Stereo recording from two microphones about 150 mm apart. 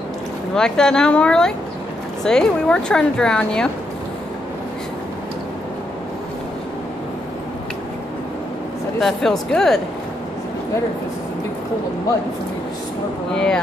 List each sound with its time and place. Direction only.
0.6 s a woman's voice: 5° left (ahead or behind)
9.0 s a woman's voice: centre (ahead or behind)
13.3 s a woman's voice: 5° left (ahead or behind)